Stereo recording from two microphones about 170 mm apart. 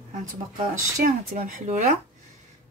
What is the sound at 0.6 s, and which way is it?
Speech, 55° right (ahead or behind).